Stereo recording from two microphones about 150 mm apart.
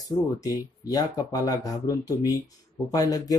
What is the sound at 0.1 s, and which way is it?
Speech, 25° left (ahead or behind).